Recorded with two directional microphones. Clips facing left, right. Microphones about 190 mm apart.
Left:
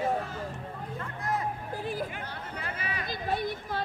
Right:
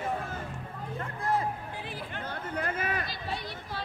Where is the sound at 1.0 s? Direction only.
30° right (ahead or behind).